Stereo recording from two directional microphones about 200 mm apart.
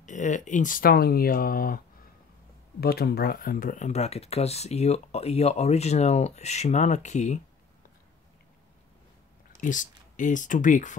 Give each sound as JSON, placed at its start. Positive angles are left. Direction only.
{"t": 0.0, "sound": "speech", "side_deg": 40}
{"t": 2.8, "sound": "speech", "side_deg": 50}
{"t": 9.6, "sound": "speech", "side_deg": 40}